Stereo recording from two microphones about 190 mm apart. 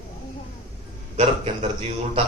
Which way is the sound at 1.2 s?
35° right (ahead or behind).